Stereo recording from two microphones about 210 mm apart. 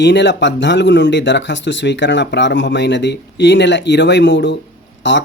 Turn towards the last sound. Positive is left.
turn(degrees=55)  # may be behind; listen again after turning